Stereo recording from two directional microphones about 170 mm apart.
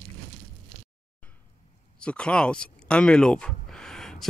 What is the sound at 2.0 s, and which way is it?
Speech, 5° left (ahead or behind).